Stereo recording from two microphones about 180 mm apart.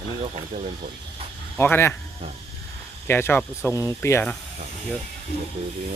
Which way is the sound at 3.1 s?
15° left (ahead or behind).